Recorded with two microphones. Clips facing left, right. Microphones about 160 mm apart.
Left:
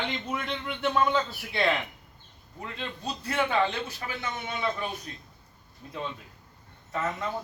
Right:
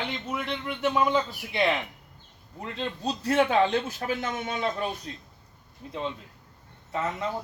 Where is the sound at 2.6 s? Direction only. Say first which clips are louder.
Right 5 dB; 35° right (ahead or behind).